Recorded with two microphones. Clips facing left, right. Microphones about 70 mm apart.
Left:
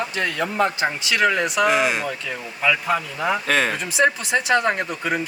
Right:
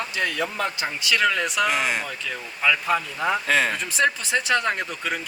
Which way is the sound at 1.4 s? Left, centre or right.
Centre.